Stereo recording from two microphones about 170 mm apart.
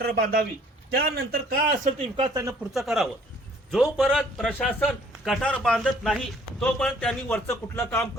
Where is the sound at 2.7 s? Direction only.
Centre (ahead or behind).